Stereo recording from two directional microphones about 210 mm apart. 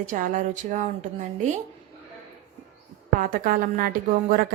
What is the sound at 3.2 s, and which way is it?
Speech, 40° right (ahead or behind).